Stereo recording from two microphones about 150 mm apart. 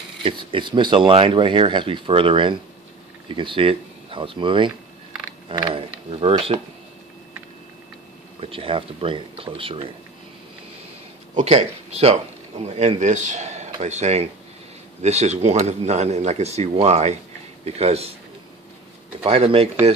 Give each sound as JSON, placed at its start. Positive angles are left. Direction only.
{"t": 0.2, "sound": "speech", "side_deg": -35}
{"t": 8.4, "sound": "speech", "side_deg": -40}
{"t": 11.3, "sound": "speech", "side_deg": -50}
{"t": 19.2, "sound": "speech", "side_deg": -40}